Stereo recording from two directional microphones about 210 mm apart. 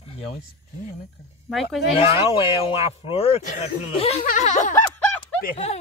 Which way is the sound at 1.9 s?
25° left (ahead or behind).